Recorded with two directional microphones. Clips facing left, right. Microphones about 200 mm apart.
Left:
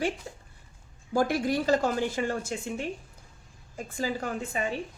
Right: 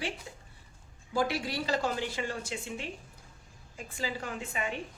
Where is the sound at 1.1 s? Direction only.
45° left (ahead or behind).